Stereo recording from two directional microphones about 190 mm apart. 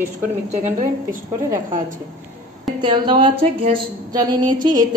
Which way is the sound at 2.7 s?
25° right (ahead or behind).